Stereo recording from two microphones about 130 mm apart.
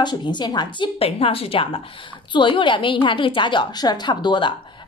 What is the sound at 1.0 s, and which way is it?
A woman's voice, 50° left (ahead or behind).